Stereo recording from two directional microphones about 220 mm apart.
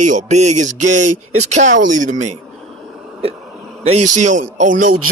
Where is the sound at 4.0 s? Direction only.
90° right.